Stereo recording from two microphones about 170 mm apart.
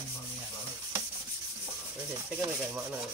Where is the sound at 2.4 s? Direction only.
15° right (ahead or behind).